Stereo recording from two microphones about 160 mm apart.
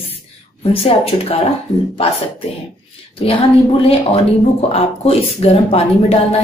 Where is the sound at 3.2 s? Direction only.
35° left (ahead or behind).